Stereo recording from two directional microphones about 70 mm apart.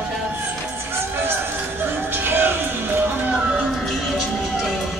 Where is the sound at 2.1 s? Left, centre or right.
Right.